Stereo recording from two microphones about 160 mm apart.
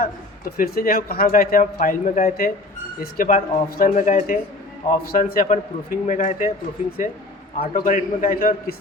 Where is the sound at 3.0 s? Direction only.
65° left (ahead or behind).